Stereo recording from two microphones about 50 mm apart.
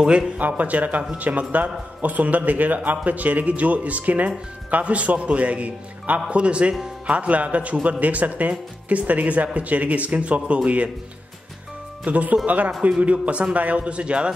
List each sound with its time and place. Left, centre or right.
0.4 s a man's voice: right
12.0 s a man's voice: right